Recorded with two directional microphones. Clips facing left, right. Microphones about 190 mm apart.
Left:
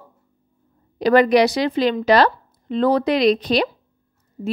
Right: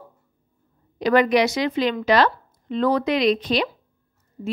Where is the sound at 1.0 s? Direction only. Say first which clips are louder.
Left 3 dB; 35° left (ahead or behind).